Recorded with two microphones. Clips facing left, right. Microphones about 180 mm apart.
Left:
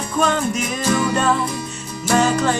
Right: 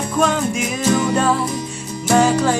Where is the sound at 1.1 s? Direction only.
10° right (ahead or behind).